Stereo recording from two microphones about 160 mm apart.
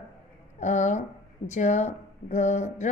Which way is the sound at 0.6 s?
50° left (ahead or behind).